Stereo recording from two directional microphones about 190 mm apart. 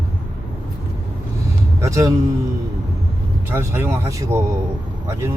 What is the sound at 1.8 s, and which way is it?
Speech, 15° right (ahead or behind).